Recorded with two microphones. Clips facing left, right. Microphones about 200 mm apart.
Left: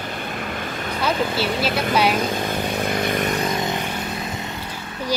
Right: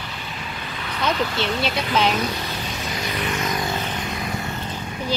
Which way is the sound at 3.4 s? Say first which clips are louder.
Left 2 dB; 20° left (ahead or behind).